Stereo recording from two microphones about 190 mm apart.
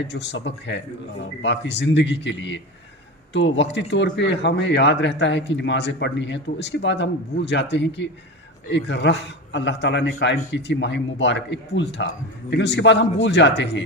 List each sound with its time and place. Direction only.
0.0 s speech: 65° left (ahead or behind)